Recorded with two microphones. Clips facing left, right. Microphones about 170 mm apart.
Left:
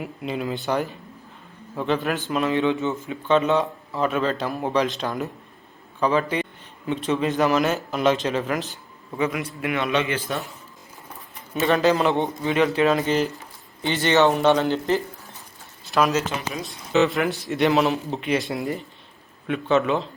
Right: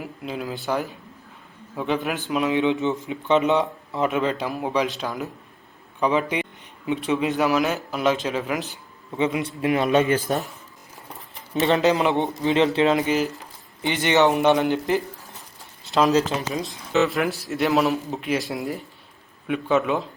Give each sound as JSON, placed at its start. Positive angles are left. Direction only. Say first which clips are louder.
{"t": 0.0, "sound": "a man's voice", "louder": "left 2 dB", "side_deg": 0}
{"t": 6.0, "sound": "a man's voice", "louder": "even", "side_deg": -20}
{"t": 9.1, "sound": "a man's voice", "louder": "right 2 dB", "side_deg": -25}
{"t": 11.5, "sound": "speech", "louder": "even", "side_deg": -20}
{"t": 13.1, "sound": "speech", "louder": "even", "side_deg": -5}
{"t": 13.8, "sound": "speech", "louder": "even", "side_deg": -15}
{"t": 15.4, "sound": "a sound", "louder": "even", "side_deg": -20}
{"t": 16.6, "sound": "a man's voice", "louder": "left 3 dB", "side_deg": 0}